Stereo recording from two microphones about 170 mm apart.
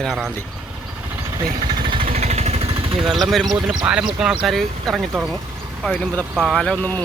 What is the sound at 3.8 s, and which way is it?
Speech, 5° right (ahead or behind).